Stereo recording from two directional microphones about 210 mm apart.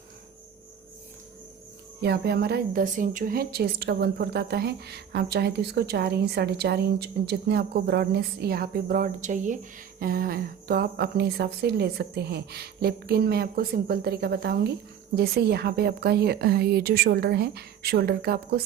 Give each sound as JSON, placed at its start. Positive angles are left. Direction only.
{"t": 2.0, "sound": "speech", "side_deg": -50}